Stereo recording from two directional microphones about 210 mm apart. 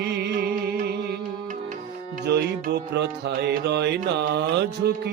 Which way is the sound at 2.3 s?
50° right (ahead or behind).